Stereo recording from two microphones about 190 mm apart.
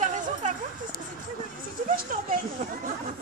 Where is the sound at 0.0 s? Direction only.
40° right (ahead or behind).